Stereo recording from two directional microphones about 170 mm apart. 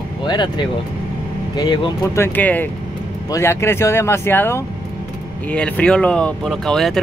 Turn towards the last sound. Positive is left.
turn(degrees=0)  # may be behind; listen again after turning